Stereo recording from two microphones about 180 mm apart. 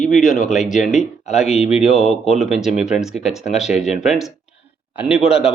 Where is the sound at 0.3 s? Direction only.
45° left (ahead or behind).